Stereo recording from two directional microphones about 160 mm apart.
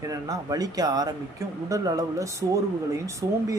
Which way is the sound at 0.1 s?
25° right (ahead or behind).